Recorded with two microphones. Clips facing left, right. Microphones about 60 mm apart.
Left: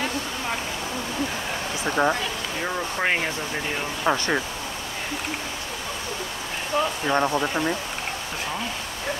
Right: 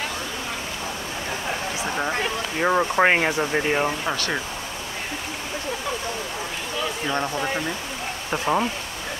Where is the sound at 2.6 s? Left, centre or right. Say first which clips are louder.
Right 8 dB; right.